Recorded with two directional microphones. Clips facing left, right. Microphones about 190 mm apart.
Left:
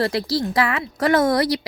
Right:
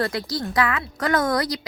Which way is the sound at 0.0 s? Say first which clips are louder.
Left 4 dB; 30° left (ahead or behind).